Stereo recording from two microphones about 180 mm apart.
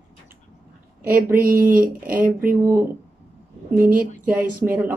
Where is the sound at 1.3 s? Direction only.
50° right (ahead or behind).